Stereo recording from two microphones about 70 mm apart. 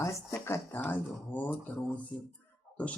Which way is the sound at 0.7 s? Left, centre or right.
Left.